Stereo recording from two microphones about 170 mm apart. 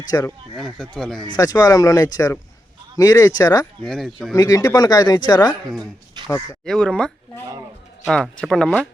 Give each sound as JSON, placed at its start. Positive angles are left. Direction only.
{"t": 0.1, "sound": "speech", "side_deg": 20}
{"t": 0.5, "sound": "speech", "side_deg": 0}
{"t": 1.4, "sound": "speech", "side_deg": 20}
{"t": 3.8, "sound": "speech", "side_deg": 0}
{"t": 4.4, "sound": "speech", "side_deg": 20}
{"t": 6.2, "sound": "a sound", "side_deg": -25}
{"t": 6.7, "sound": "speech", "side_deg": 5}